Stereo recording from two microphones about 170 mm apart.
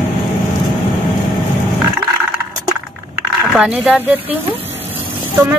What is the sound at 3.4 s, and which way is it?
Speech, 5° right (ahead or behind).